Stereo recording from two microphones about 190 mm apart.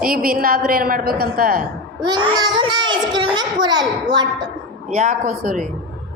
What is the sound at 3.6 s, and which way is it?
Speech, 20° right (ahead or behind).